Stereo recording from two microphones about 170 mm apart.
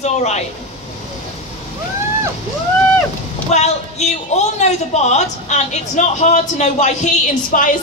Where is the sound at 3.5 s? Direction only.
40° left (ahead or behind).